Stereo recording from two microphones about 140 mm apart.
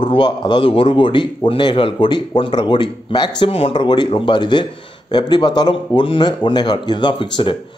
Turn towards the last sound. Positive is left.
turn(degrees=35)  # may be behind; listen again after turning